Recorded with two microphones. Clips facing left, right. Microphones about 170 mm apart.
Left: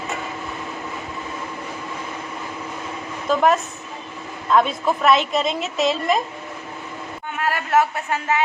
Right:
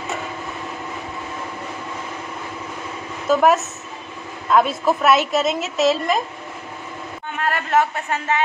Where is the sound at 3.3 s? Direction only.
5° right (ahead or behind).